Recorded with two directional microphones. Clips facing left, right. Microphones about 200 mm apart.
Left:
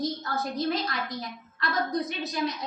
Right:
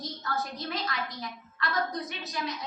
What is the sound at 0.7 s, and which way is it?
Speech, 35° left (ahead or behind).